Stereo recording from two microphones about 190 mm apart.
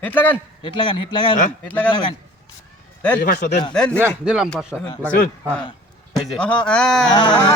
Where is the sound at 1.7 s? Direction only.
10° left (ahead or behind).